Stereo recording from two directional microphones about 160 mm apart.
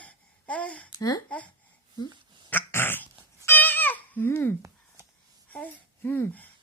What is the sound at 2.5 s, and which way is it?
Dog, 15° left (ahead or behind).